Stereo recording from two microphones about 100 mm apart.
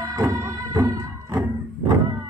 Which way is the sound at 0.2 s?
35° right (ahead or behind).